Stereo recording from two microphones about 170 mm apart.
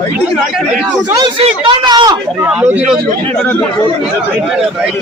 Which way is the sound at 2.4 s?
10° right (ahead or behind).